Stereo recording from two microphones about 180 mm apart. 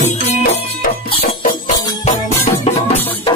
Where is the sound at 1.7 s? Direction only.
40° left (ahead or behind).